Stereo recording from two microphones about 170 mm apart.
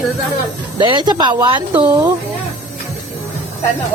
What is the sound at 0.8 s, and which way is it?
Speech, 25° right (ahead or behind).